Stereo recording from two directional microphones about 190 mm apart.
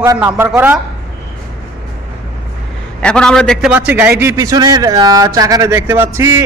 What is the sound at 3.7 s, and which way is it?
Speech, 10° right (ahead or behind).